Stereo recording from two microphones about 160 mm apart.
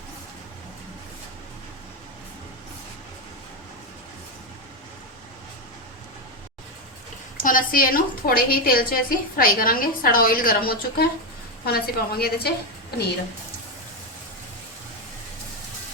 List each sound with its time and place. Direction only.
7.3 s a woman's voice: 60° left (ahead or behind); by 12.5 s 75° left (ahead or behind)